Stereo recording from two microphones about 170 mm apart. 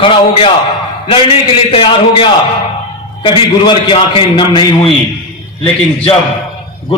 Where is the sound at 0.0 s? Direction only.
30° left (ahead or behind).